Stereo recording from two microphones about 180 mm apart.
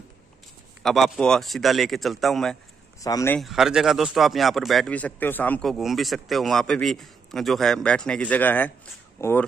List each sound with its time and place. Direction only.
0.8 s speech: centre (ahead or behind)
3.0 s speech: 20° left (ahead or behind)
3.3 s speech: centre (ahead or behind)